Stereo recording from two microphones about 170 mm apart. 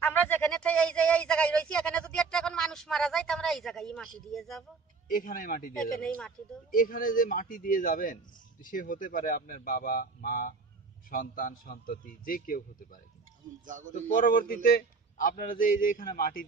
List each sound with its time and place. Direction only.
0.0 s speech: 10° left (ahead or behind)
5.0 s a man's voice: 55° left (ahead or behind)
5.8 s speech: 5° left (ahead or behind)
6.7 s a man's voice: 55° left (ahead or behind)
13.7 s speech: 50° right (ahead or behind)
14.2 s a man's voice: 55° left (ahead or behind)